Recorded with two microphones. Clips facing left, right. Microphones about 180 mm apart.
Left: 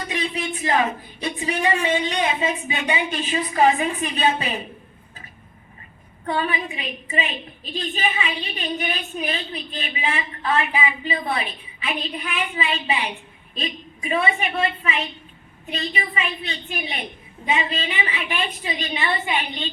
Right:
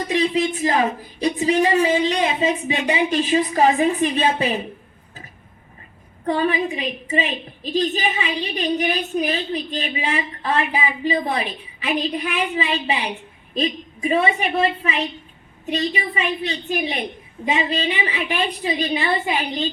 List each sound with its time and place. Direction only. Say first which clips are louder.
0.1 s a woman's voice: right 8 dB; 40° right (ahead or behind)
6.2 s a woman's voice: right 5 dB; 40° right (ahead or behind)